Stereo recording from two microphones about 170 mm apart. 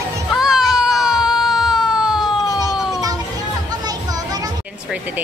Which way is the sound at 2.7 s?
5° right (ahead or behind).